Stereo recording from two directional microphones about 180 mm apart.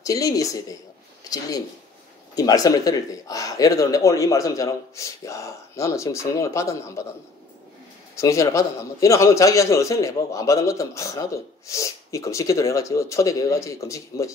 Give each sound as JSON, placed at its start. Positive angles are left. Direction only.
{"t": 0.0, "sound": "speech", "side_deg": 20}
{"t": 2.3, "sound": "a man's voice", "side_deg": 20}
{"t": 8.2, "sound": "a man's voice", "side_deg": 15}